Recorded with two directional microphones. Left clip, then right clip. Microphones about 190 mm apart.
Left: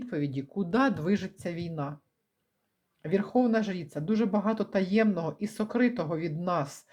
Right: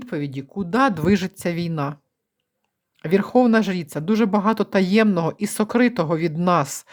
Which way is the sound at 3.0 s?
40° right (ahead or behind).